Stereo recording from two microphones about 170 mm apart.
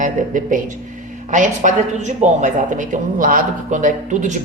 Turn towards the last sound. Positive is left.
turn(degrees=-45)  # may be behind; listen again after turning